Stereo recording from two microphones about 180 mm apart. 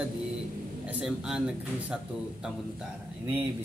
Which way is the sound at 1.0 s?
5° right (ahead or behind).